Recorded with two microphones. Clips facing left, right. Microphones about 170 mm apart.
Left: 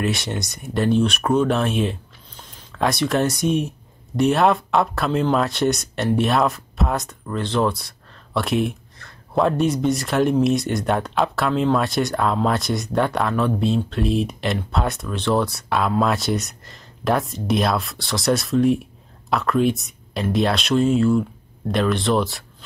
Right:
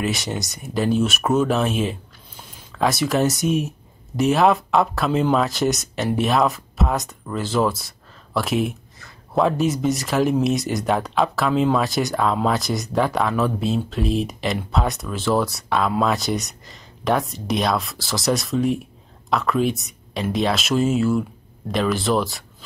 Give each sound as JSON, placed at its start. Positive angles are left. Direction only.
{"t": 0.0, "sound": "speech", "side_deg": 0}